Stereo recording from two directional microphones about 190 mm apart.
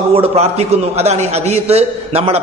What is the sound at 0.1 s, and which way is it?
A man's voice, 35° right (ahead or behind).